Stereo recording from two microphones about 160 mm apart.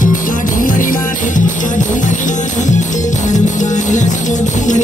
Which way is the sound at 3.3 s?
50° left (ahead or behind).